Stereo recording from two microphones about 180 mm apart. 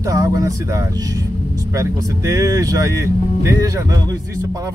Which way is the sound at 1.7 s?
15° right (ahead or behind).